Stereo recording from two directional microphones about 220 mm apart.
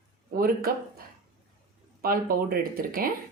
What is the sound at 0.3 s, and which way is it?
Speech, 40° right (ahead or behind).